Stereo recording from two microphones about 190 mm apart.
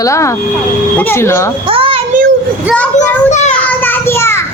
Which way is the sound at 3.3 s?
40° left (ahead or behind).